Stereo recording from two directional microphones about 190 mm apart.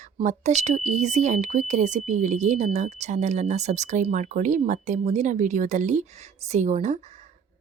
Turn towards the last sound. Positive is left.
turn(degrees=-40)  # may be behind; listen again after turning